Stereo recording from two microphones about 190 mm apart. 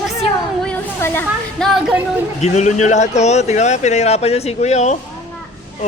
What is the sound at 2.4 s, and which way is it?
Speech, 40° left (ahead or behind).